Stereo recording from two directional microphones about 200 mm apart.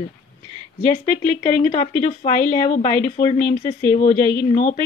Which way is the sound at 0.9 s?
35° left (ahead or behind).